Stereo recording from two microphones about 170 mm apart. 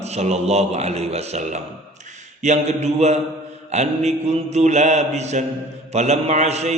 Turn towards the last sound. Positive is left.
turn(degrees=-40)  # may be behind; listen again after turning